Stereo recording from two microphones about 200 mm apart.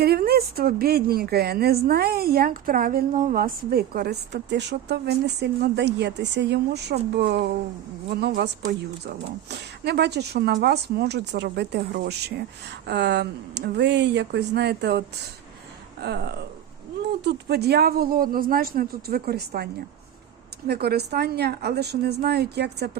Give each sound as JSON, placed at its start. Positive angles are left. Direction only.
{"t": 0.0, "sound": "a woman's voice", "side_deg": -50}
{"t": 9.5, "sound": "a woman's voice", "side_deg": -55}
{"t": 20.7, "sound": "a woman's voice", "side_deg": -50}